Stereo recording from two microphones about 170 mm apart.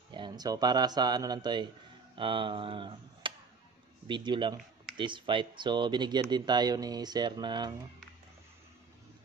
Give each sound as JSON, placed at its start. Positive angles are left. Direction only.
{"t": 0.1, "sound": "speech", "side_deg": -25}